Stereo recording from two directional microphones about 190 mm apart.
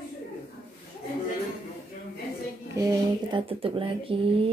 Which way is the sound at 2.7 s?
20° right (ahead or behind).